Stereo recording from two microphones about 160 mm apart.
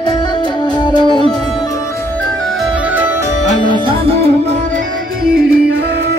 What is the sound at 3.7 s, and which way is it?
Music, 35° right (ahead or behind).